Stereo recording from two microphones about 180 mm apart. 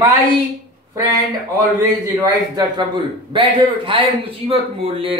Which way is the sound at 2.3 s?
25° right (ahead or behind).